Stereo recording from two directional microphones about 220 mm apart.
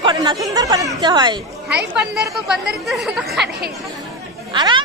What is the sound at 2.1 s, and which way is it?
Speech, centre (ahead or behind).